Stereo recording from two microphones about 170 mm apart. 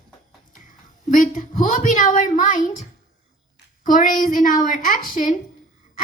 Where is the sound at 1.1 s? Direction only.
50° left (ahead or behind).